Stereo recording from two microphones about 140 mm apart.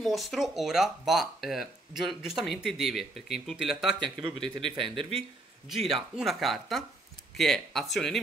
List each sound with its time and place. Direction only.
0.0 s speech: centre (ahead or behind)
4.6 s speech: 35° right (ahead or behind)
5.7 s speech: centre (ahead or behind)